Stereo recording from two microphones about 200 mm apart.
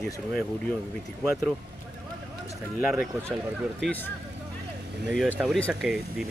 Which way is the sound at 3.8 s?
10° left (ahead or behind).